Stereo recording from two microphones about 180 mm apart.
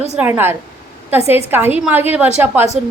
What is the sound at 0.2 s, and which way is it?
A man's voice, 10° right (ahead or behind).